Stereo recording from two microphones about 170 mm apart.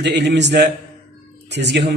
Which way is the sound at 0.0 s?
85° right.